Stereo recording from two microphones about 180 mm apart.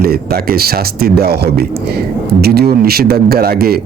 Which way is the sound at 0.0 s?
55° right (ahead or behind).